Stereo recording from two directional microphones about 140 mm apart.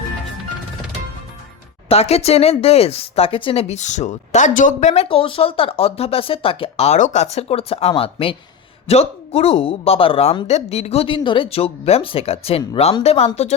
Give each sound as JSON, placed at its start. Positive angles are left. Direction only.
{"t": 1.9, "sound": "speech", "side_deg": 45}
{"t": 5.0, "sound": "speech", "side_deg": 40}